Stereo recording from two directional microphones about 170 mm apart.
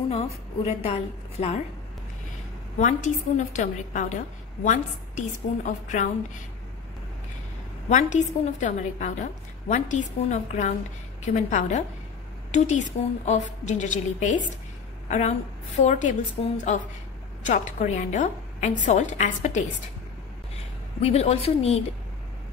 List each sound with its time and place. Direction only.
0.1 s a woman's voice: 40° left (ahead or behind)
2.8 s a woman's voice: 45° left (ahead or behind)
5.7 s a woman's voice: 45° left (ahead or behind)
7.9 s a woman's voice: 45° left (ahead or behind)
21.0 s a woman's voice: 35° left (ahead or behind)